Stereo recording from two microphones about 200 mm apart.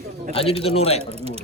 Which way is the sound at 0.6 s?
30° left (ahead or behind).